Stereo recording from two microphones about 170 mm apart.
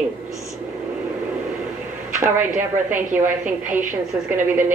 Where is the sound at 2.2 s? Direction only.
10° right (ahead or behind).